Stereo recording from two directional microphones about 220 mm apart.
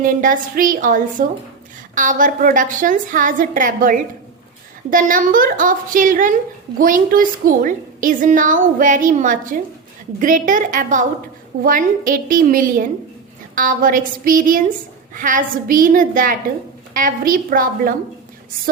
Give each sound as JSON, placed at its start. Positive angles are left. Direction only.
{"t": 0.0, "sound": "a woman's voice", "side_deg": -40}